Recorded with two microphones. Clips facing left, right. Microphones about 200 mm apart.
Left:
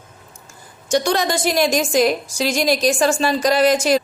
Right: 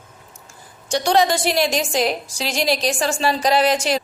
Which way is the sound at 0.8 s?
45° left (ahead or behind).